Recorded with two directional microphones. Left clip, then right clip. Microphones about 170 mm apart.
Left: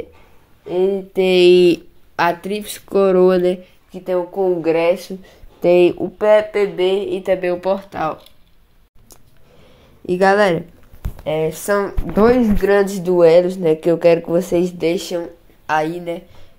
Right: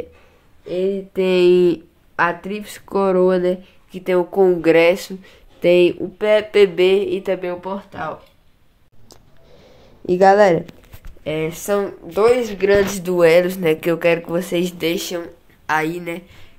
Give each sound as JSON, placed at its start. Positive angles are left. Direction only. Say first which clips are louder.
{"t": 1.1, "sound": "speech", "louder": "left 3 dB", "side_deg": 10}
{"t": 3.9, "sound": "a woman's voice", "louder": "right 2 dB", "side_deg": -25}
{"t": 5.8, "sound": "speech", "louder": "left 2 dB", "side_deg": 10}
{"t": 6.3, "sound": "a woman's voice", "louder": "right 2 dB", "side_deg": -30}
{"t": 7.6, "sound": "speech", "louder": "left 7 dB", "side_deg": 20}
{"t": 10.0, "sound": "speech", "louder": "right 2 dB", "side_deg": 5}
{"t": 11.6, "sound": "speech", "louder": "left 2 dB", "side_deg": 0}